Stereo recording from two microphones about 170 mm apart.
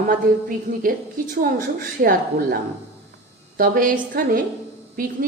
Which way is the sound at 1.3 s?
55° right (ahead or behind).